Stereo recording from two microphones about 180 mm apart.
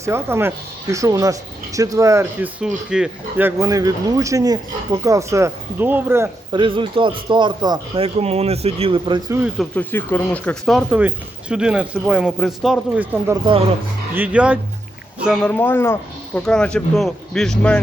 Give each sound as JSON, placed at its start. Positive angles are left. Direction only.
{"t": 0.0, "sound": "speech", "side_deg": -15}
{"t": 2.6, "sound": "speech", "side_deg": -5}
{"t": 6.5, "sound": "speech", "side_deg": -25}
{"t": 9.6, "sound": "speech", "side_deg": 10}
{"t": 13.2, "sound": "speech", "side_deg": -25}
{"t": 14.1, "sound": "speech", "side_deg": -10}